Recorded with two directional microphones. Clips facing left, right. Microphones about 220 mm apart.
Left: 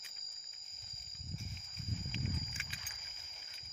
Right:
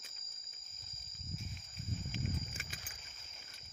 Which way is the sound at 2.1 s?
45° right (ahead or behind).